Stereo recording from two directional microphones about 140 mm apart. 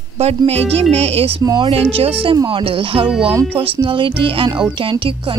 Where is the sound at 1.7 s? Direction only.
45° right (ahead or behind).